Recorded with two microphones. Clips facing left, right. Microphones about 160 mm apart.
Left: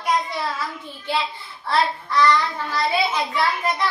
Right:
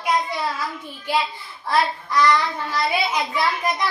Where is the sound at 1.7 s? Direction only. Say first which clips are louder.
Even; 10° right (ahead or behind).